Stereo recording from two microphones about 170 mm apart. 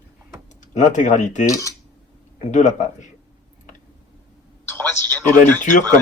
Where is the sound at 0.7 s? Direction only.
45° left (ahead or behind).